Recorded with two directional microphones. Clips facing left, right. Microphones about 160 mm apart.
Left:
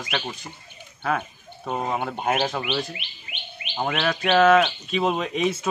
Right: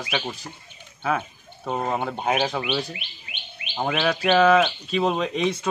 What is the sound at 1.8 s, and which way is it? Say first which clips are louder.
Speech: right 1 dB; 5° left (ahead or behind).